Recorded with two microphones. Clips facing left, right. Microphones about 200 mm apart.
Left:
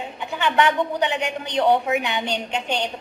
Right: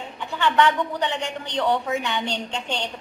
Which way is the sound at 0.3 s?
15° left (ahead or behind).